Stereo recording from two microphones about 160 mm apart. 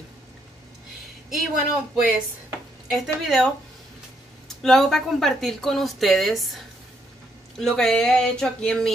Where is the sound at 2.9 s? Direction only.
Centre (ahead or behind).